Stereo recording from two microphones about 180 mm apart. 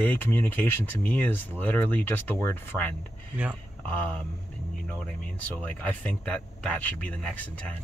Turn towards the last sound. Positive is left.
turn(degrees=5)  # may be behind; listen again after turning